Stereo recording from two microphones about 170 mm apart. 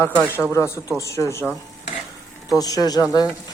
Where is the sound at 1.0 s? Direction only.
15° left (ahead or behind).